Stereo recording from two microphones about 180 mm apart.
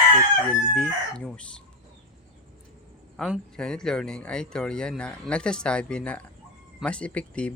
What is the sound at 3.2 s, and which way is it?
Speech, centre (ahead or behind).